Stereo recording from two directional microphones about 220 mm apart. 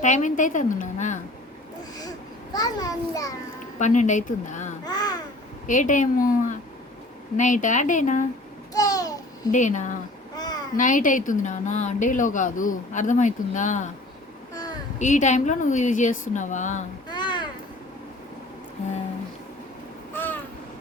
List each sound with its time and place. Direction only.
0.0 s a woman's voice: 35° left (ahead or behind)
2.0 s babbling: 15° left (ahead or behind)
3.8 s a woman's voice: 35° left (ahead or behind)
4.9 s babbling: 20° left (ahead or behind)
5.6 s a woman's voice: 35° left (ahead or behind)
7.3 s a woman's voice: 35° left (ahead or behind)
8.7 s babbling: 15° left (ahead or behind)
9.5 s a woman's voice: 35° left (ahead or behind)
10.3 s a sound: 20° left (ahead or behind)
10.8 s a woman's voice: 35° left (ahead or behind)
14.5 s child singing: 15° left (ahead or behind)
14.9 s a woman's voice: 35° left (ahead or behind)
17.1 s a sound: 20° left (ahead or behind)
20.1 s babbling: 10° left (ahead or behind)